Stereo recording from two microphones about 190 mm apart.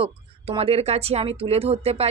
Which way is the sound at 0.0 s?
30° right (ahead or behind).